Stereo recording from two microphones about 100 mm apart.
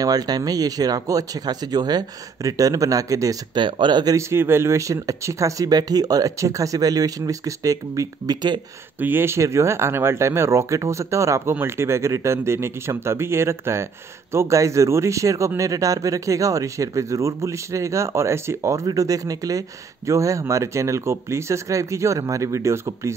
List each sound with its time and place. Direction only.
0.0 s speech: 40° right (ahead or behind)
3.5 s speech: 50° right (ahead or behind)
4.2 s speech: 25° right (ahead or behind); by 8.5 s 45° right (ahead or behind)
9.0 s speech: 20° right (ahead or behind)